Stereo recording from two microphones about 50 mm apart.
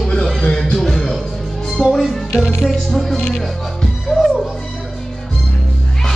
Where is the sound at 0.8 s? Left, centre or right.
Centre.